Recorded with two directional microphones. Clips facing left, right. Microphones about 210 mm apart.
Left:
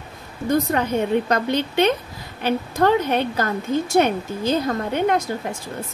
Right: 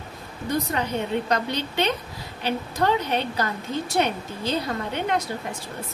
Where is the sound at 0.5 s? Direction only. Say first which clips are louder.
Left 6 dB; 45° left (ahead or behind).